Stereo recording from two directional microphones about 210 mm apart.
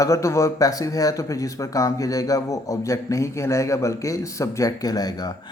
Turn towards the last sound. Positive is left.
turn(degrees=20)  # may be behind; listen again after turning